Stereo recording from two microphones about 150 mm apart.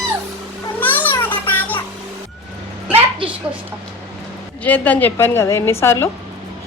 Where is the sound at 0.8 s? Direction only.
10° left (ahead or behind).